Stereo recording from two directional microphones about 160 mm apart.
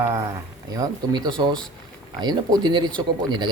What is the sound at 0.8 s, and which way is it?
Speech, 25° right (ahead or behind).